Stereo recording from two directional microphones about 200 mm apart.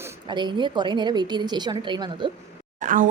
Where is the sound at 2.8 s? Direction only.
40° right (ahead or behind).